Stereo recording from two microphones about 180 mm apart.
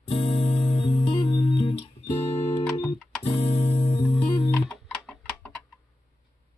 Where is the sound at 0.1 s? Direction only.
30° left (ahead or behind).